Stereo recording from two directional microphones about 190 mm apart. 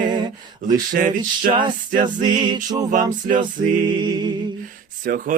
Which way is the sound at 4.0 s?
25° right (ahead or behind).